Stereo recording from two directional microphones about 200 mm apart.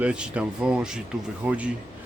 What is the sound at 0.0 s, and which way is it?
Speech, 5° right (ahead or behind).